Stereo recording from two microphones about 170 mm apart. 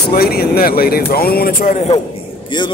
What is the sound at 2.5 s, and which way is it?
Speech, 25° left (ahead or behind).